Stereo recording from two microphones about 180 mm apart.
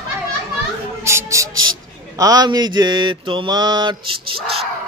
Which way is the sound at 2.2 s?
20° right (ahead or behind).